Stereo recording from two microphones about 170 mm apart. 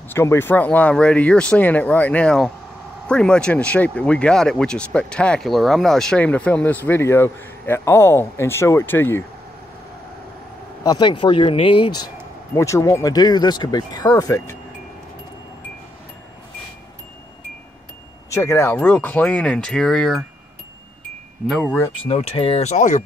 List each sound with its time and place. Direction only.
0.1 s speech: 15° left (ahead or behind)
10.8 s speech: 25° left (ahead or behind)
12.5 s speech: 20° left (ahead or behind)
18.3 s speech: 15° left (ahead or behind)
21.5 s speech: centre (ahead or behind)
22.0 s speech: 35° left (ahead or behind)